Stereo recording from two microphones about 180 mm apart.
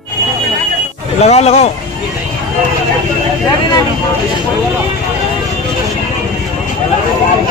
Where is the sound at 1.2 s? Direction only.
35° left (ahead or behind).